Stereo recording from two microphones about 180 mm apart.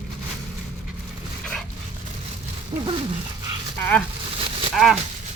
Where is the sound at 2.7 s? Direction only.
30° right (ahead or behind).